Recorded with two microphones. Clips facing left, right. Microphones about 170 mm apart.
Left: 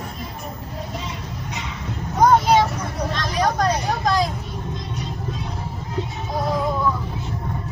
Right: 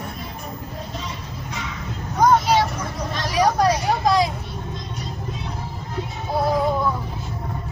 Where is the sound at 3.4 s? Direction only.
5° right (ahead or behind).